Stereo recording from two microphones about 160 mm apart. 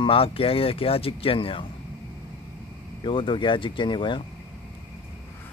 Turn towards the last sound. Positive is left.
turn(degrees=30)  # may be behind; listen again after turning